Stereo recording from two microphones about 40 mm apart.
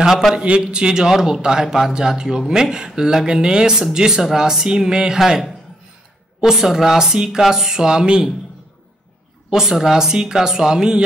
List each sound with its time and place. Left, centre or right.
0.6 s a man's voice: right
6.4 s a man's voice: centre
9.5 s a man's voice: centre